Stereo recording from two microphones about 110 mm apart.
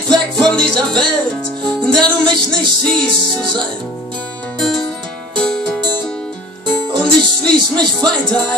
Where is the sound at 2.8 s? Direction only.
10° left (ahead or behind).